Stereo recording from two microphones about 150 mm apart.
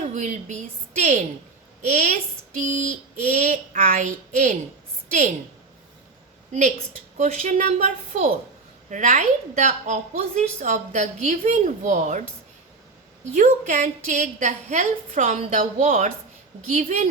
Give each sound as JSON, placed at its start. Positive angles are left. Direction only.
{"t": 0.1, "sound": "a woman's voice", "side_deg": -55}
{"t": 1.8, "sound": "a woman's voice", "side_deg": -50}
{"t": 6.5, "sound": "a woman's voice", "side_deg": -50}
{"t": 13.3, "sound": "a woman's voice", "side_deg": -55}